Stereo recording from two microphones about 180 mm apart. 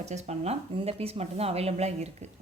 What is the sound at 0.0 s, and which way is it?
A woman's voice, 40° right (ahead or behind).